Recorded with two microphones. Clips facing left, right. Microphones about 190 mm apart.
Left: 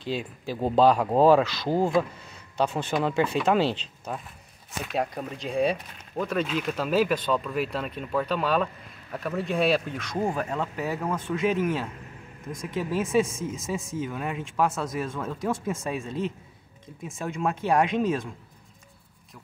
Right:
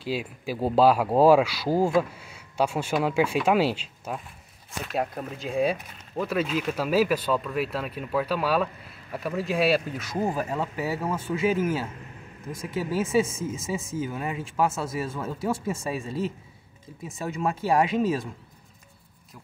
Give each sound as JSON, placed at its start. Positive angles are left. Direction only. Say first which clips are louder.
{"t": 0.0, "sound": "speech", "louder": "right 1 dB", "side_deg": -5}